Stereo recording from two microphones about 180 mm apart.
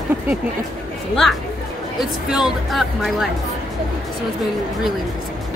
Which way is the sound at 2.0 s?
5° right (ahead or behind).